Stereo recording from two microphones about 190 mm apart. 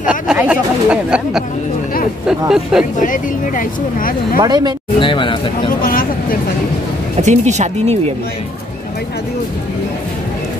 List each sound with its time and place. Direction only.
0.0 s speech: 5° right (ahead or behind)
3.0 s speech: 45° left (ahead or behind)
4.4 s speech: 20° right (ahead or behind)
5.0 s a man's voice: 25° left (ahead or behind)
5.7 s speech: 50° left (ahead or behind)
7.2 s speech: 35° right (ahead or behind)